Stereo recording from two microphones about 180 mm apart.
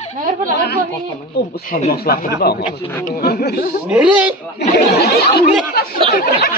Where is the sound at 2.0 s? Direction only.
60° left (ahead or behind).